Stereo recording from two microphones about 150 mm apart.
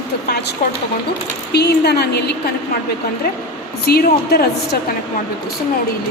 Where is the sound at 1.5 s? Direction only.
90° left.